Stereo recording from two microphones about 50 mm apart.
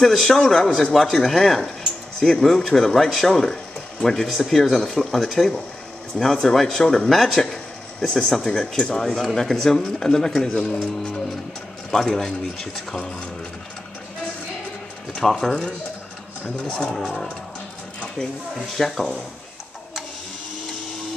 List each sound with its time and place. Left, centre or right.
0.0 s speech: centre
15.1 s speech: centre
16.5 s speech: centre
18.8 s speech: centre